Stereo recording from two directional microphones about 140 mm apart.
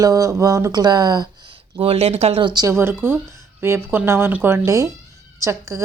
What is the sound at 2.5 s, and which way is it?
Speech, 25° right (ahead or behind).